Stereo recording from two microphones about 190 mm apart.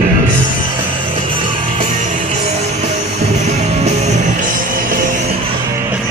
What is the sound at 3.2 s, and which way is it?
Music, 35° right (ahead or behind).